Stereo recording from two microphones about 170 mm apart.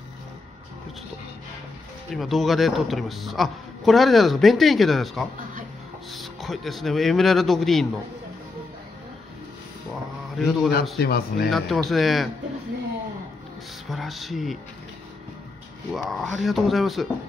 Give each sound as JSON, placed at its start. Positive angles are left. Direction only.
{"t": 2.1, "sound": "a man's voice", "side_deg": 0}
{"t": 10.3, "sound": "a man's voice", "side_deg": 0}
{"t": 11.0, "sound": "speech", "side_deg": 65}
{"t": 11.5, "sound": "a man's voice", "side_deg": 0}
{"t": 13.8, "sound": "speech", "side_deg": 0}
{"t": 15.9, "sound": "a man's voice", "side_deg": 0}